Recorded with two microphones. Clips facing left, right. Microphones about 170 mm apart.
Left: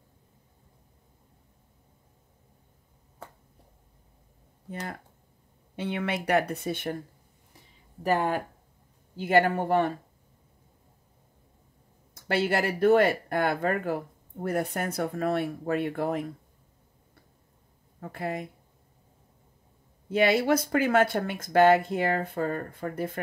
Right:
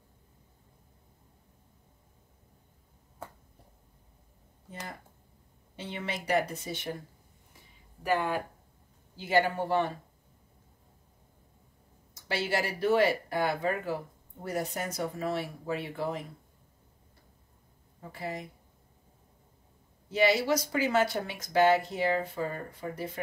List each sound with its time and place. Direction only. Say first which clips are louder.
5.8 s speech: left 7 dB; 60° left (ahead or behind)
8.0 s speech: left 3 dB; 40° left (ahead or behind)
9.1 s speech: left 4 dB; 55° left (ahead or behind)
12.1 s speech: left 5 dB; 55° left (ahead or behind)
18.0 s speech: left 5 dB; 55° left (ahead or behind)
20.1 s speech: left 3 dB; 55° left (ahead or behind)